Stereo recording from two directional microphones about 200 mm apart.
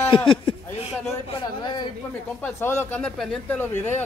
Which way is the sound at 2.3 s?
10° left (ahead or behind).